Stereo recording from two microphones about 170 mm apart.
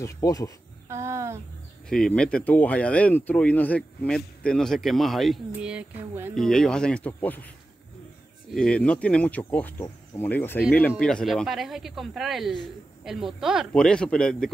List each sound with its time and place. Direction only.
0.0 s speech: 20° left (ahead or behind)
0.8 s a sound: 15° right (ahead or behind)
1.9 s speech: 5° left (ahead or behind)
6.3 s speech: centre (ahead or behind)
8.5 s speech: 5° left (ahead or behind)